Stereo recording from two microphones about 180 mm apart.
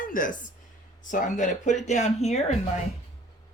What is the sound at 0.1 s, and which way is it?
A woman's voice, 50° left (ahead or behind).